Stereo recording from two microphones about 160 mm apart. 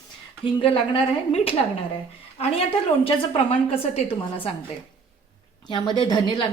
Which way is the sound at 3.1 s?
35° left (ahead or behind).